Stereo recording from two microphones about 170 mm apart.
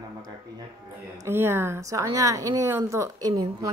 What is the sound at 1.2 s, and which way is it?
Speech, 15° right (ahead or behind).